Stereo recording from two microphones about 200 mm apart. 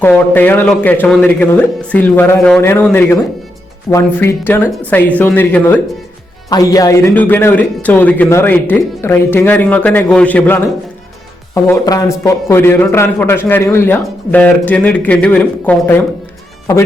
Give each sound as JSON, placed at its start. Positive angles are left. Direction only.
{"t": 0.0, "sound": "a man's voice", "side_deg": 10}